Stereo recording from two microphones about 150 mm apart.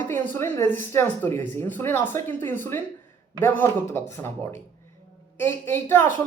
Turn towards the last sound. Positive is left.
turn(degrees=15)  # may be behind; listen again after turning